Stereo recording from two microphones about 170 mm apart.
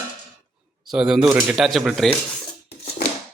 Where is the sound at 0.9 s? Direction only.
5° right (ahead or behind).